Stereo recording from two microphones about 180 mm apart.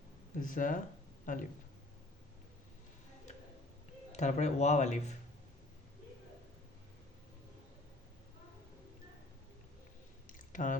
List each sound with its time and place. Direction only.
0.3 s speech: 50° left (ahead or behind)
4.1 s speech: 40° left (ahead or behind)
10.2 s a sound: 45° left (ahead or behind)